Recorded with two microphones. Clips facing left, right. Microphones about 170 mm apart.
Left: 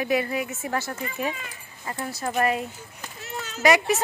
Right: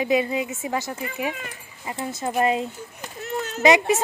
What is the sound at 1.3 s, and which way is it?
Speech, 60° right (ahead or behind).